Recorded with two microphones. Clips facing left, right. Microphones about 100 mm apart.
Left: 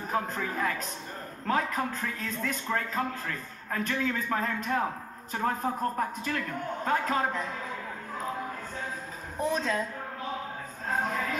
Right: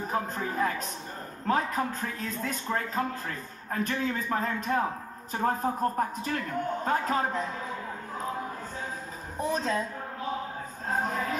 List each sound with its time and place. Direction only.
0.1 s a man's voice: 35° right (ahead or behind)
9.5 s a man's voice: 35° right (ahead or behind)
10.9 s a man's voice: 35° right (ahead or behind)